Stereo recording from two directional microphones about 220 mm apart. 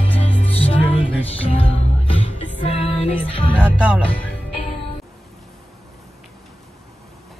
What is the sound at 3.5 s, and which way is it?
Music, 5° right (ahead or behind).